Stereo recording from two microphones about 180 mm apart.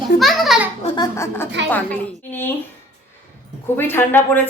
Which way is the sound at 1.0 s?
15° left (ahead or behind).